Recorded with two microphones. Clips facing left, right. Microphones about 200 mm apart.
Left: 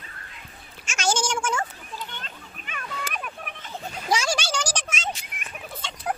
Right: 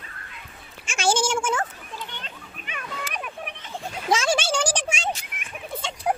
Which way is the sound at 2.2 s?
45° left (ahead or behind).